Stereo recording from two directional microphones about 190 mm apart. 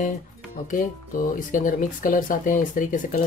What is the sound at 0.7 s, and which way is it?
Speech, 45° left (ahead or behind).